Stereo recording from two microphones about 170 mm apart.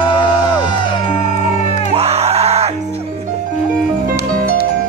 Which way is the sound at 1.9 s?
40° right (ahead or behind).